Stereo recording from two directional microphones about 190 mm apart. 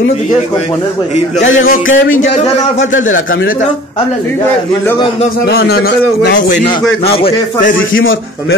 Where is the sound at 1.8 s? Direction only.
90° left.